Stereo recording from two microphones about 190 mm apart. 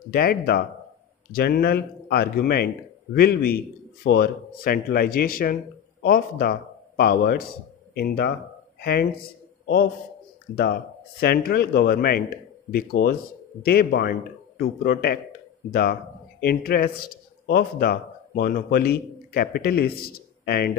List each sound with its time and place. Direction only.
0.1 s speech: 50° left (ahead or behind)
10.5 s speech: 55° left (ahead or behind)